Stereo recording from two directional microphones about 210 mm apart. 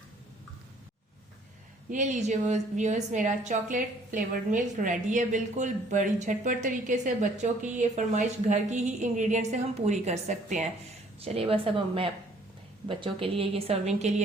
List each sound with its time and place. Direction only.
1.9 s a woman's voice: 35° right (ahead or behind)